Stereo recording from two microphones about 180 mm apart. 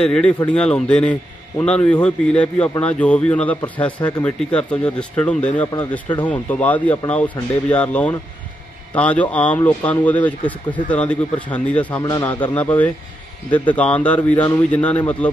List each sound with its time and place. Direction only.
0.0 s speech: 5° left (ahead or behind)
12.0 s a man's voice: 20° left (ahead or behind)
12.5 s speech: 10° left (ahead or behind)